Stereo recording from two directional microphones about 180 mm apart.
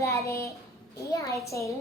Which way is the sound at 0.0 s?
15° left (ahead or behind).